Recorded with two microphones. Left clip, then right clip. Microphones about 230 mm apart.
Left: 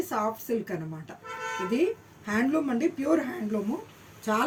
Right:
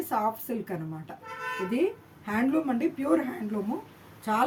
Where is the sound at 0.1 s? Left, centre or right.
Centre.